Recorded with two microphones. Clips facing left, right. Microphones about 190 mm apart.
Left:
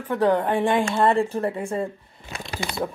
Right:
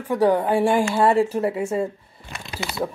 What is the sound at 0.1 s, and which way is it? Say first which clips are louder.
A woman's voice: right 2 dB; 10° right (ahead or behind).